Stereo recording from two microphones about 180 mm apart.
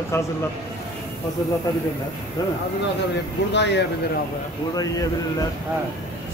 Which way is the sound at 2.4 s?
20° left (ahead or behind).